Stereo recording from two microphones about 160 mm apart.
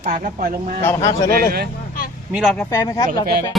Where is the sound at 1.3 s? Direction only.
75° right (ahead or behind).